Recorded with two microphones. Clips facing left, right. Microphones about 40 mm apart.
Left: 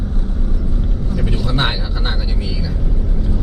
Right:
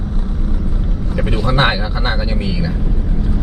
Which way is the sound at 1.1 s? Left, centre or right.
Right.